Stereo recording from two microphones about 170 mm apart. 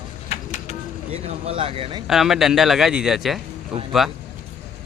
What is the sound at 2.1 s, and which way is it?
Speech, centre (ahead or behind).